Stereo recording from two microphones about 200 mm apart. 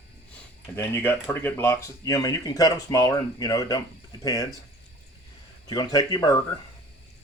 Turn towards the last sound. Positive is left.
turn(degrees=20)  # may be behind; listen again after turning